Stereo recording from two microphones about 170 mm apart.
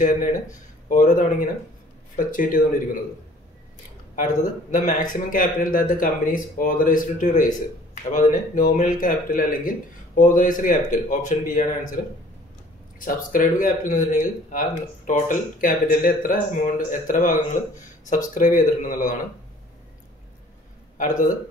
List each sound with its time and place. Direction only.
0.0 s speech: 50° left (ahead or behind)
4.1 s speech: 50° left (ahead or behind)
13.0 s speech: 55° left (ahead or behind)